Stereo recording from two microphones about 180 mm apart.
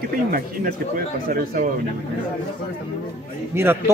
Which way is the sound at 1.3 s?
55° right (ahead or behind).